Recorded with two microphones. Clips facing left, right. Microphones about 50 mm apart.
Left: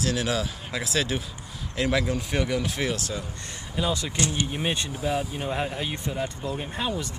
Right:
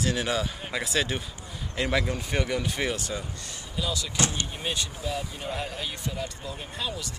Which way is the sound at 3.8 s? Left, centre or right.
Left.